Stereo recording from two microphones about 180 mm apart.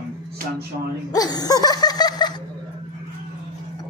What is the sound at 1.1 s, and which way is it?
Laughter, 20° left (ahead or behind).